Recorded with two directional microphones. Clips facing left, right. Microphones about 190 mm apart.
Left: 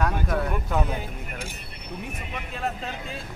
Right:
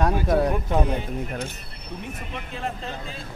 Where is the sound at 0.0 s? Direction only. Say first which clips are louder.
Right 5 dB; 35° right (ahead or behind).